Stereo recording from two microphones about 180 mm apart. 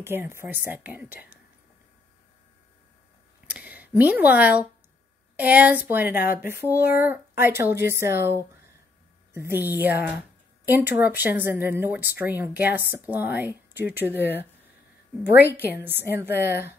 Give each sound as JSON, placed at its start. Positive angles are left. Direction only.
{"t": 0.0, "sound": "speech", "side_deg": -15}
{"t": 3.4, "sound": "a sound", "side_deg": -10}
{"t": 5.3, "sound": "speech", "side_deg": -10}
{"t": 15.3, "sound": "a woman's voice", "side_deg": 65}
{"t": 16.0, "sound": "speech", "side_deg": -10}